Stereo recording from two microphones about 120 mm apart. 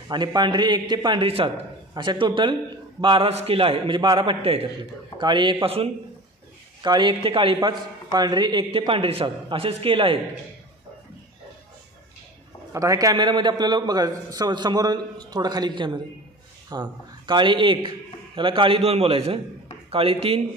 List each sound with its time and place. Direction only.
0.1 s a man's voice: 40° right (ahead or behind); by 4.6 s 55° right (ahead or behind)
5.2 s a man's voice: 40° right (ahead or behind)
6.8 s a man's voice: 40° right (ahead or behind)
8.1 s a man's voice: 35° right (ahead or behind)
12.7 s a man's voice: 30° right (ahead or behind)
13.1 s a man's voice: 40° right (ahead or behind)